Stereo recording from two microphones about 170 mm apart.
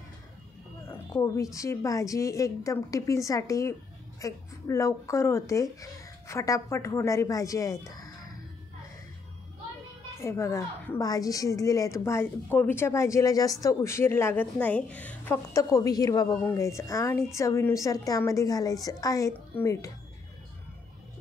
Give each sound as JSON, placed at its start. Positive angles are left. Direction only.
{"t": 0.8, "sound": "a woman's voice", "side_deg": 20}
{"t": 10.1, "sound": "a woman's voice", "side_deg": 15}